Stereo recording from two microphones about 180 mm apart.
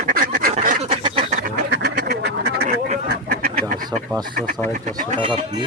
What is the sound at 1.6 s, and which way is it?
Duck, 65° right (ahead or behind).